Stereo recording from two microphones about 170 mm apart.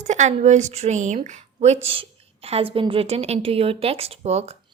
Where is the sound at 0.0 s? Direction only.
45° right (ahead or behind).